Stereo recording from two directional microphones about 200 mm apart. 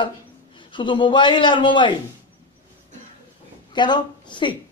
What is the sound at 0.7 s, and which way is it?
Speech, 25° left (ahead or behind).